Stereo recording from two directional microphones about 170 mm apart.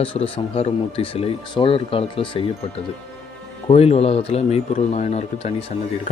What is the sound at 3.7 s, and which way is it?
Speech, 40° left (ahead or behind).